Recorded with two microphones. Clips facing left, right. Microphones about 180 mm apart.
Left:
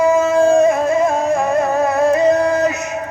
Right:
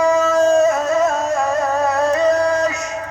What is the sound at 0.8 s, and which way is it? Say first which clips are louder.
Music: left 2 dB; 55° left (ahead or behind).